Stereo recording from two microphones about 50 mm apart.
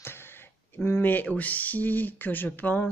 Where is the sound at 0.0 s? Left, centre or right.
Left.